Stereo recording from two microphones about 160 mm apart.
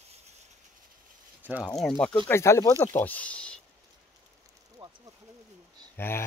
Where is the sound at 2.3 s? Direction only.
15° left (ahead or behind).